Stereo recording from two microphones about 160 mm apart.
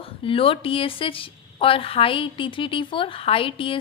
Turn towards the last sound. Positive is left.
turn(degrees=35)  # may be behind; listen again after turning